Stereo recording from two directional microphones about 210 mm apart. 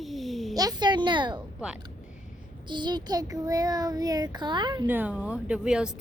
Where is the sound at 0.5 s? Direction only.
20° right (ahead or behind).